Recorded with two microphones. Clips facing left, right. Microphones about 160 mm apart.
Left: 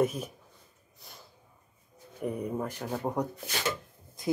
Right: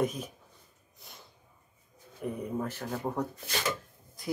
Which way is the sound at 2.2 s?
5° left (ahead or behind).